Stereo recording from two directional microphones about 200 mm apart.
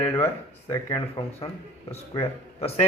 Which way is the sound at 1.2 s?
30° left (ahead or behind).